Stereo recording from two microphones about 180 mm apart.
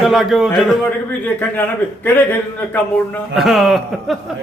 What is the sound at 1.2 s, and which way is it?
Speech, 10° left (ahead or behind).